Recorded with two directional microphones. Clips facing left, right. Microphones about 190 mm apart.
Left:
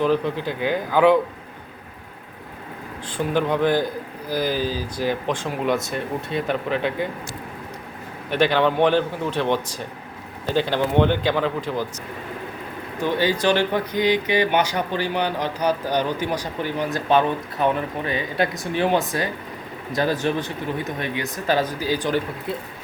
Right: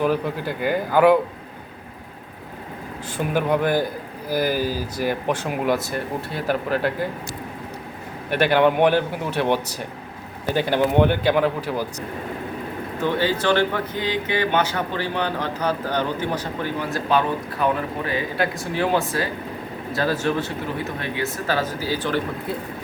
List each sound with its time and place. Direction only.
0.0 s speech: 10° right (ahead or behind)
3.3 s speech: 10° right (ahead or behind)
8.3 s speech: 10° right (ahead or behind)
13.0 s speech: 15° left (ahead or behind)